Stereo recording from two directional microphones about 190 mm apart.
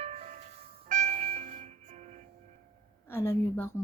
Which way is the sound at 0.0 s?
35° right (ahead or behind).